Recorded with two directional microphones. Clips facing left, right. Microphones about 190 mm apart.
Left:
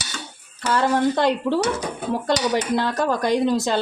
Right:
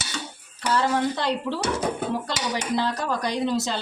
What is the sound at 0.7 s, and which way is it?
Speech, 55° left (ahead or behind).